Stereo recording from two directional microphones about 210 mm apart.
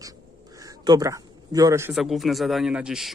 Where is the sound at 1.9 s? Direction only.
Centre (ahead or behind).